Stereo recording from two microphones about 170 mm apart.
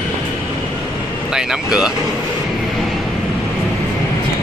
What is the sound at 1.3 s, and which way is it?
Speech, 5° right (ahead or behind).